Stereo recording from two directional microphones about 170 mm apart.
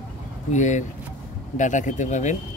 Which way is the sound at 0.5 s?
45° left (ahead or behind).